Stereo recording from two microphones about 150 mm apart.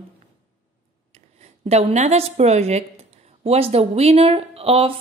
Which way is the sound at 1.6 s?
45° right (ahead or behind).